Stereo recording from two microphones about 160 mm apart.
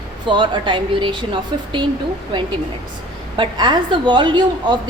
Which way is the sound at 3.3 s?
30° right (ahead or behind).